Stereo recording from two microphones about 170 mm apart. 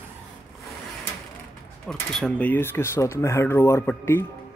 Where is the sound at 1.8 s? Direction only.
5° left (ahead or behind).